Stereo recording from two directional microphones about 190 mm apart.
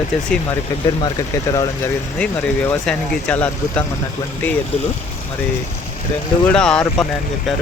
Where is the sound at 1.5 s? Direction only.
15° left (ahead or behind).